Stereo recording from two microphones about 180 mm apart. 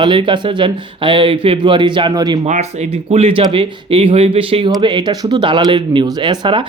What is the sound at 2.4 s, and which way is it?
Speech, 35° right (ahead or behind).